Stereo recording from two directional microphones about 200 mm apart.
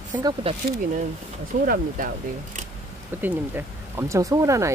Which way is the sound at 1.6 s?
45° right (ahead or behind).